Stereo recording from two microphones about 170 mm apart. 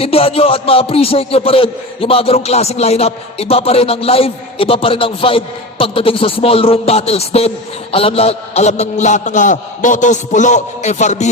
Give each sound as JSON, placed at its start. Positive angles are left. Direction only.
{"t": 0.0, "sound": "music", "side_deg": 35}
{"t": 7.9, "sound": "a man's voice", "side_deg": 35}